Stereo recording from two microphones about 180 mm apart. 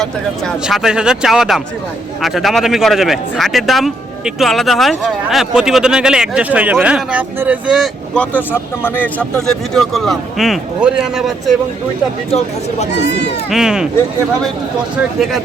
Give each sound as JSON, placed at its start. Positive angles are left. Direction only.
{"t": 0.7, "sound": "speech", "side_deg": -5}
{"t": 13.0, "sound": "speech", "side_deg": 70}
{"t": 13.5, "sound": "speech", "side_deg": -5}